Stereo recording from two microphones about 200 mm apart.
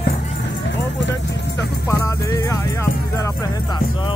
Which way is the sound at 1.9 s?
15° left (ahead or behind).